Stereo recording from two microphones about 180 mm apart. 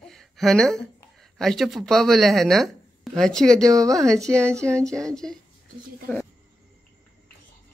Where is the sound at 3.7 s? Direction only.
20° right (ahead or behind).